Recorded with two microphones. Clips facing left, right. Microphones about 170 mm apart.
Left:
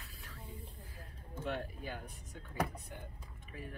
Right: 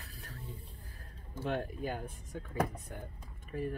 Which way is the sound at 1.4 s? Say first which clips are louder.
Right 5 dB; 50° right (ahead or behind).